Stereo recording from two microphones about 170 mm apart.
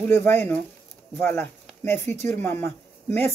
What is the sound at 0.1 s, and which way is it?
Speech, 15° left (ahead or behind).